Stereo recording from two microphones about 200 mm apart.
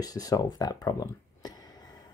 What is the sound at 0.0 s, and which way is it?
Speech, 20° left (ahead or behind).